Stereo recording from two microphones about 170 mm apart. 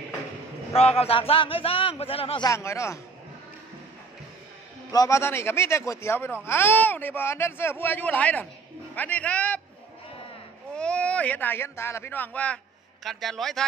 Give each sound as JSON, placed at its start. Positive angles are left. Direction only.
{"t": 0.7, "sound": "a man's voice", "side_deg": 35}
{"t": 2.5, "sound": "speech", "side_deg": 15}
{"t": 4.9, "sound": "speech", "side_deg": 20}
{"t": 10.8, "sound": "a man's voice", "side_deg": 5}